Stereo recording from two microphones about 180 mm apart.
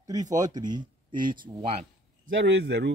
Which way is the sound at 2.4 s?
75° right (ahead or behind).